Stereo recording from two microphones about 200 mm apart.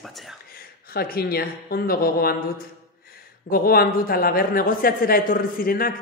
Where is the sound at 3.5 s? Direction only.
45° left (ahead or behind).